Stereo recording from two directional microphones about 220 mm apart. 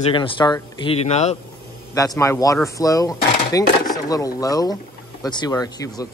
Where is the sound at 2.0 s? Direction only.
15° left (ahead or behind).